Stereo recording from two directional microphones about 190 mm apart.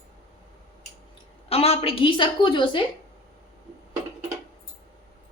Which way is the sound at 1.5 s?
30° left (ahead or behind).